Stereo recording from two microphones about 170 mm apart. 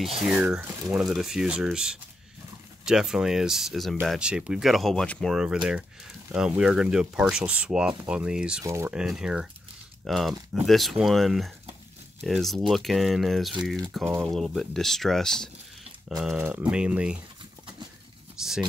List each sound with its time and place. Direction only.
0.0 s speech: centre (ahead or behind)
8.6 s speech: 15° right (ahead or behind)
8.9 s speech: 5° right (ahead or behind)
18.4 s speech: 5° right (ahead or behind)